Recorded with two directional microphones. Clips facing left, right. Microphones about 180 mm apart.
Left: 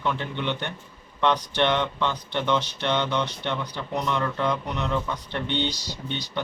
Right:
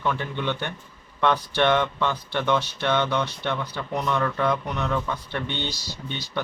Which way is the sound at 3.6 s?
10° right (ahead or behind).